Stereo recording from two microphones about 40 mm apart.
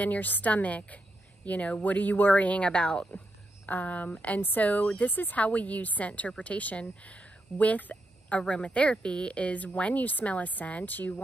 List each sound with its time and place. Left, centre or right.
0.0 s speech: left
2.3 s speech: left
3.6 s speech: left
5.0 s a woman's voice: left
5.4 s speech: left
8.4 s a woman's voice: left